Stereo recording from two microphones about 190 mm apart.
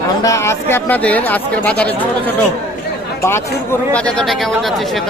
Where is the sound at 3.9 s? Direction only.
5° left (ahead or behind).